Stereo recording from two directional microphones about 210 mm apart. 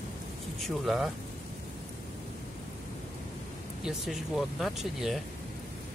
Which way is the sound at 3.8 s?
Centre (ahead or behind).